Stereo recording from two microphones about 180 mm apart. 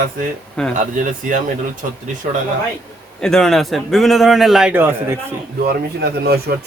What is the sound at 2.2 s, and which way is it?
Speech, 50° right (ahead or behind).